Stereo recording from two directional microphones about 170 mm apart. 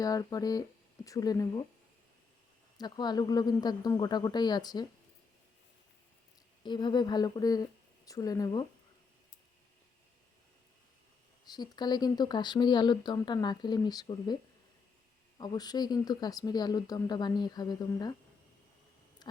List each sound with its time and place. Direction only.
0.0 s speech: 20° left (ahead or behind)
2.7 s speech: 25° left (ahead or behind)
6.7 s speech: 25° left (ahead or behind)
11.4 s speech: 25° left (ahead or behind)
15.4 s speech: 25° left (ahead or behind)
19.2 s a sound: 25° left (ahead or behind)